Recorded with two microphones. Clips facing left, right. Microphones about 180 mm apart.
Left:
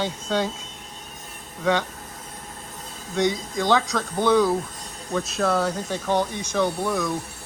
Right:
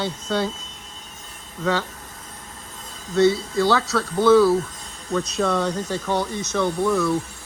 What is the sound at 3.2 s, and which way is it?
A man's voice, 15° left (ahead or behind).